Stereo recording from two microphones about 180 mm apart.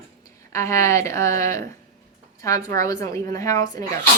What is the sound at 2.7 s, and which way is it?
Speech, 20° left (ahead or behind).